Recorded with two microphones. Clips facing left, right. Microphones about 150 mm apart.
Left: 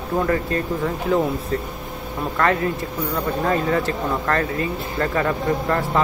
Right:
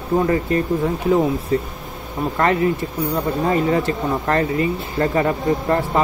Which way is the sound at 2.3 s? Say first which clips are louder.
Right 3 dB; 20° right (ahead or behind).